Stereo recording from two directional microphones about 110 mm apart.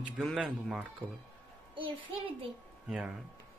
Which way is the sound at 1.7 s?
55° right (ahead or behind).